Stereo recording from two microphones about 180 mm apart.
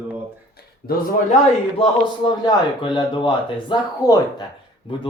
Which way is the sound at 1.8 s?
25° left (ahead or behind).